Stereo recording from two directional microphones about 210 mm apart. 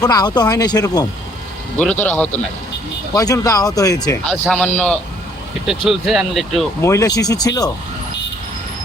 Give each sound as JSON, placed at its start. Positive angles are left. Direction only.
{"t": 0.0, "sound": "speech", "side_deg": 20}
{"t": 1.8, "sound": "speech", "side_deg": 5}
{"t": 4.3, "sound": "speech", "side_deg": 5}
{"t": 6.8, "sound": "speech", "side_deg": 15}